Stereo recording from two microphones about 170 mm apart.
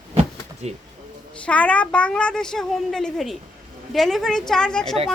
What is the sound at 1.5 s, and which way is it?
A woman's voice, 5° left (ahead or behind).